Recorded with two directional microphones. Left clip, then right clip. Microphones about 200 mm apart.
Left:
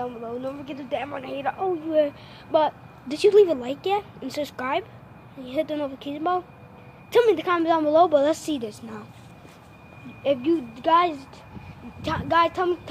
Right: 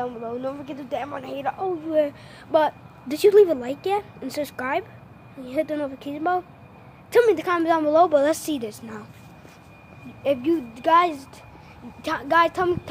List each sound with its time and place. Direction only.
0.0 s a woman's voice: 10° right (ahead or behind)
10.2 s a woman's voice: centre (ahead or behind)